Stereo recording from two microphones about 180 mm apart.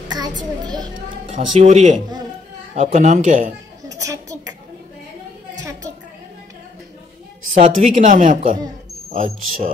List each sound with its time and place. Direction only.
0.4 s a child's voice: 25° right (ahead or behind)
1.3 s a woman's voice: 40° right (ahead or behind)
3.9 s a sound: 20° right (ahead or behind)
7.5 s a woman's voice: 45° right (ahead or behind)